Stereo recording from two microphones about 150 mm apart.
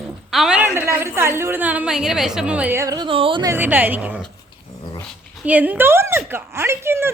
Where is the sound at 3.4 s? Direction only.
15° right (ahead or behind).